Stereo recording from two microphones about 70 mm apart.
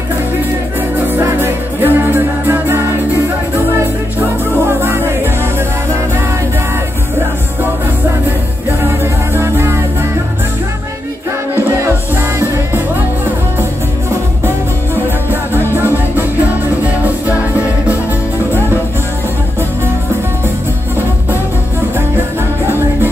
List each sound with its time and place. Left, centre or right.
1.0 s music: right
4.6 s music: right
8.8 s music: right
12.4 s music: right
15.5 s music: right